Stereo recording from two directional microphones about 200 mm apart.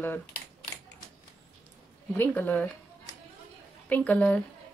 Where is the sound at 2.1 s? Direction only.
10° left (ahead or behind).